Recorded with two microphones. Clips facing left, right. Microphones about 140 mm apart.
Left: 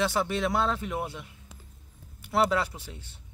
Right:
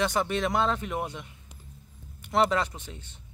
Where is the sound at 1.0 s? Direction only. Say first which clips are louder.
Right 1 dB; 20° right (ahead or behind).